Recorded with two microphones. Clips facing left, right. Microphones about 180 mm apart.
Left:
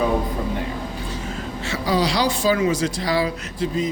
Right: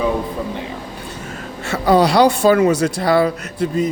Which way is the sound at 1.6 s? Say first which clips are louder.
Right 7 dB; 55° right (ahead or behind).